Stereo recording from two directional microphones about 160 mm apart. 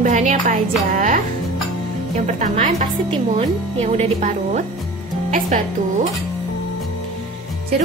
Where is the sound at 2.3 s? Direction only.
55° right (ahead or behind).